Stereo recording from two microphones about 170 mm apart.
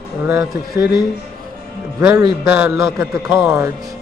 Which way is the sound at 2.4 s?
5° right (ahead or behind).